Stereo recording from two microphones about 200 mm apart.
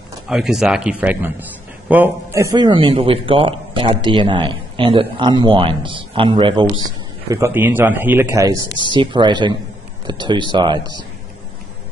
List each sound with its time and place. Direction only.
0.3 s a man's voice: centre (ahead or behind)
2.5 s speech: 25° right (ahead or behind)
7.2 s a man's voice: 10° right (ahead or behind)